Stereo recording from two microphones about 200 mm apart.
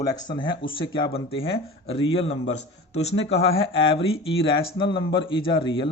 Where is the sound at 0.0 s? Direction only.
20° left (ahead or behind).